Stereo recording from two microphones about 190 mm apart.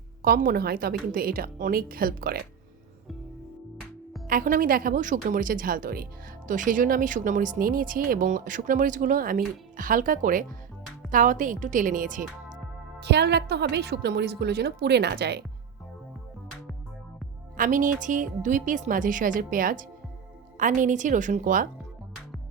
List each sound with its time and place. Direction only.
0.2 s speech: 50° right (ahead or behind)
4.3 s speech: 45° right (ahead or behind)
13.0 s a woman's voice: 60° right (ahead or behind)
17.6 s speech: 45° right (ahead or behind)